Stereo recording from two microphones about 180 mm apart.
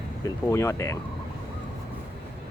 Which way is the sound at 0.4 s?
15° left (ahead or behind).